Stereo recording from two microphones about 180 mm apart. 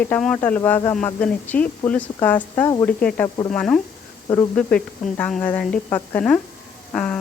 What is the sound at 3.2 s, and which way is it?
Speech, 20° left (ahead or behind).